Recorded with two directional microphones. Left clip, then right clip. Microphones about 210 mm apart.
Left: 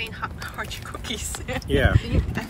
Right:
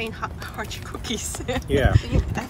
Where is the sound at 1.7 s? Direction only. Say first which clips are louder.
Even; 25° left (ahead or behind).